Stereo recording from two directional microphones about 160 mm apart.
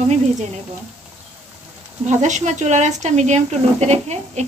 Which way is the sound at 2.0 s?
50° right (ahead or behind).